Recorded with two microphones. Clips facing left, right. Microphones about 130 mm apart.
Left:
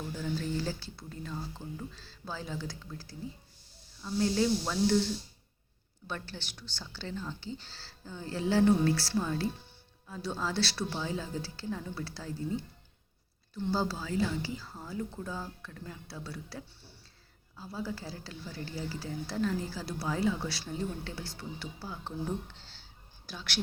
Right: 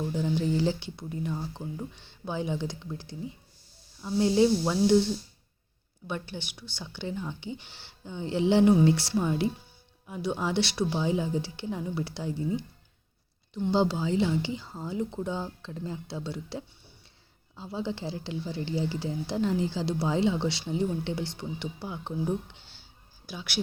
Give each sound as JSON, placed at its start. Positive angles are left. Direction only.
{"t": 0.1, "sound": "speech", "side_deg": -20}
{"t": 6.1, "sound": "speech", "side_deg": -15}